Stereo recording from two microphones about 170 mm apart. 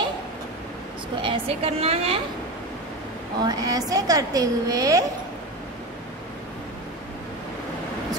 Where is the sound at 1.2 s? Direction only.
35° right (ahead or behind).